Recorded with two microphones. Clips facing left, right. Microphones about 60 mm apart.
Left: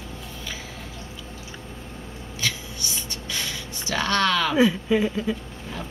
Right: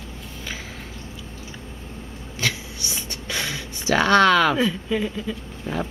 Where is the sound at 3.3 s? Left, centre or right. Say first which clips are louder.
Right 4 dB; right.